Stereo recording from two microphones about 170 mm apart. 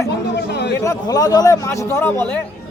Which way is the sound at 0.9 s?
20° left (ahead or behind).